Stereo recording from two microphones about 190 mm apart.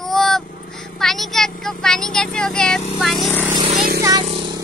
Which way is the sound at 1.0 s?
Centre (ahead or behind).